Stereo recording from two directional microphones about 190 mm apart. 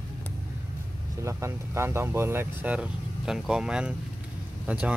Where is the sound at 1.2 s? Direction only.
15° right (ahead or behind).